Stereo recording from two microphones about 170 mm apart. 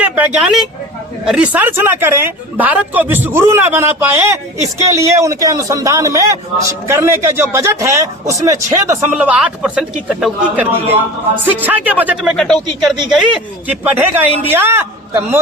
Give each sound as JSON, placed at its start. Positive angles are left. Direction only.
{"t": 0.0, "sound": "speech", "side_deg": -10}
{"t": 9.1, "sound": "speech", "side_deg": -5}
{"t": 10.7, "sound": "a man's voice", "side_deg": -35}
{"t": 11.6, "sound": "speech", "side_deg": -10}